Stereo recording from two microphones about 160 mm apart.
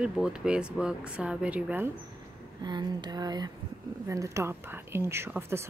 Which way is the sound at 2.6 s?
25° right (ahead or behind).